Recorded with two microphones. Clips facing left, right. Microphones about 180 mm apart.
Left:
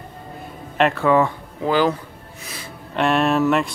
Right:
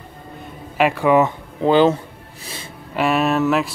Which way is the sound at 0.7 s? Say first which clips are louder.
Right 1 dB; 10° right (ahead or behind).